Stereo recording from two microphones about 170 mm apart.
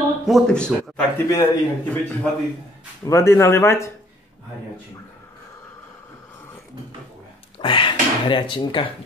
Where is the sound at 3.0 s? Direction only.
15° left (ahead or behind).